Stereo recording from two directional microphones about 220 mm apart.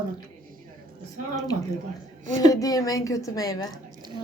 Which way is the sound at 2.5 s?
15° left (ahead or behind).